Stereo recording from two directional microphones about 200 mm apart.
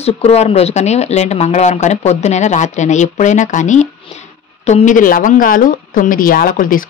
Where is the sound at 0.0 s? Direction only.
30° left (ahead or behind).